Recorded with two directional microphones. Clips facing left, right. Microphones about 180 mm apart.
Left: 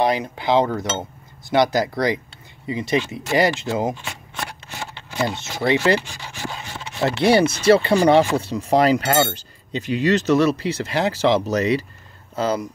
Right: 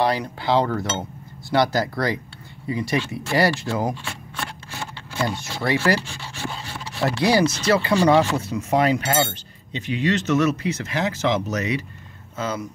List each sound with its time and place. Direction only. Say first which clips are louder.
0.0 s speech: left 2 dB; 20° left (ahead or behind); by 12.6 s 35° left (ahead or behind)